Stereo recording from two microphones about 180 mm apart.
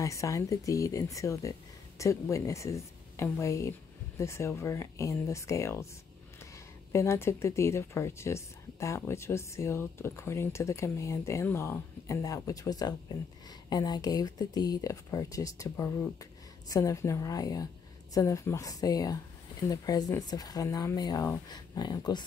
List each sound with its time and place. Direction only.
0.0 s speech: 15° left (ahead or behind)
6.9 s speech: 15° left (ahead or behind)